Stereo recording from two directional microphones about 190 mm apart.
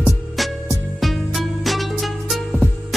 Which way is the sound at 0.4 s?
Centre (ahead or behind).